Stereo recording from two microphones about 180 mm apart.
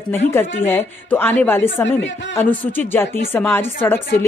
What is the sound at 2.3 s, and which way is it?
A woman's voice, 10° left (ahead or behind).